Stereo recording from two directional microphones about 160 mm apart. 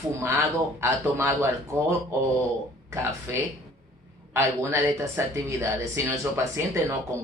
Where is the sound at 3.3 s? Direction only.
15° right (ahead or behind).